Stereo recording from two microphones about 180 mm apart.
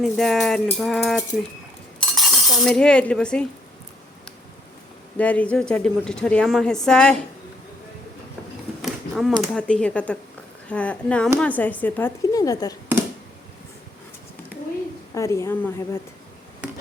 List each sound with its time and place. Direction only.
0.0 s speech: centre (ahead or behind)
2.1 s a sound: centre (ahead or behind)
5.1 s speech: 10° left (ahead or behind)
8.8 s a sound: centre (ahead or behind)
9.4 s a woman's voice: 5° left (ahead or behind)
15.1 s a woman's voice: 15° left (ahead or behind)